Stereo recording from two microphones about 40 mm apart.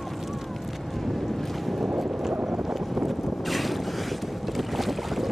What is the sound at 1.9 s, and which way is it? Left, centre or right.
Boat, centre.